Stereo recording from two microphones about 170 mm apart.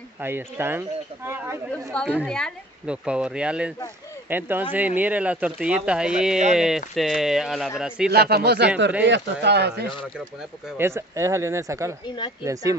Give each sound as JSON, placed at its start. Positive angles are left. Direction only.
{"t": 0.2, "sound": "speech", "side_deg": -15}
{"t": 2.2, "sound": "speech", "side_deg": 5}
{"t": 8.1, "sound": "speech", "side_deg": -70}
{"t": 10.8, "sound": "speech", "side_deg": -15}